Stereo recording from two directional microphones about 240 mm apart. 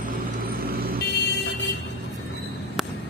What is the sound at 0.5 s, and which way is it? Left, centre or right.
Vehicle, right.